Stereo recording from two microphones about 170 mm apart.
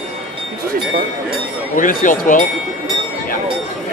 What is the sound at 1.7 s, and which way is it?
Speech, 50° left (ahead or behind).